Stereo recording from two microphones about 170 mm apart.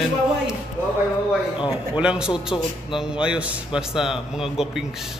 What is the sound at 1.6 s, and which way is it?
Speech, 5° right (ahead or behind).